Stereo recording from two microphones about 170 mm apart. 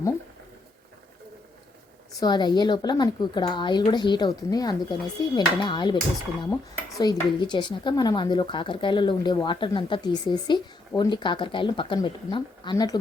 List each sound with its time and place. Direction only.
2.2 s speech: 25° left (ahead or behind)
7.0 s speech: 25° left (ahead or behind)